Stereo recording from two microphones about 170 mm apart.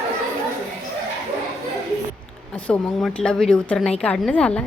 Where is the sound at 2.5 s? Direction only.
10° left (ahead or behind).